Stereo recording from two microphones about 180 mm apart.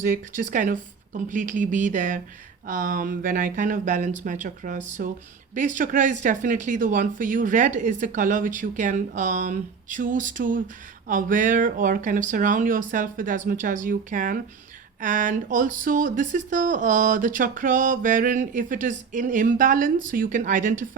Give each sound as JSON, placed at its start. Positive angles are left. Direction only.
{"t": 0.0, "sound": "speech", "side_deg": -45}